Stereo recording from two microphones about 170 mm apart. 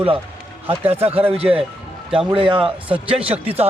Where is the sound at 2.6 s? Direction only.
5° right (ahead or behind).